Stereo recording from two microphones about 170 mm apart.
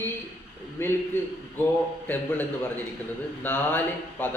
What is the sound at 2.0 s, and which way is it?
Speech, 10° left (ahead or behind).